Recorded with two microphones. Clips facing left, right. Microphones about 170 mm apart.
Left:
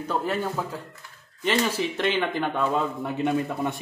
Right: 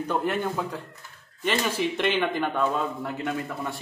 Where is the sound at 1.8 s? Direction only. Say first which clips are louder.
Right 1 dB; 60° right (ahead or behind).